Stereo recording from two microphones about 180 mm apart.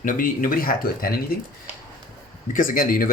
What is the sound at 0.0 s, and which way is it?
Speech, 50° left (ahead or behind).